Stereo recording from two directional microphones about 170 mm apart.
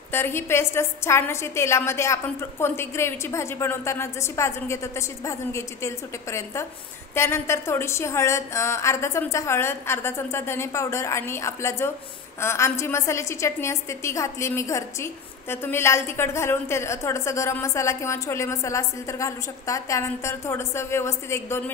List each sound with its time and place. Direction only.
0.1 s a woman's voice: 15° left (ahead or behind)